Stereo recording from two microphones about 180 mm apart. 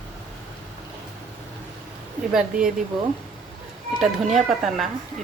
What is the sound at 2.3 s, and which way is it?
Speech, 5° right (ahead or behind).